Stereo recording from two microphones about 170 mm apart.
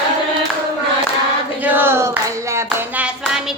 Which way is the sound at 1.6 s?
10° right (ahead or behind).